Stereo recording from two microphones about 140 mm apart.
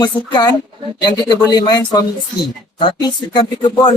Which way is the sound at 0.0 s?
30° left (ahead or behind).